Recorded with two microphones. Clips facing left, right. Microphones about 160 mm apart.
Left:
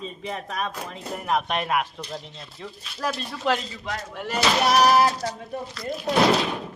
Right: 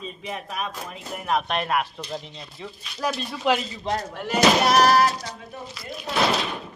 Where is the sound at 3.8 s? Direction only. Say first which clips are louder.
Right 5 dB; 30° right (ahead or behind).